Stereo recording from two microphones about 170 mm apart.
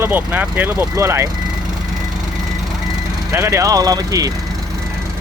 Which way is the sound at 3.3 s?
15° right (ahead or behind).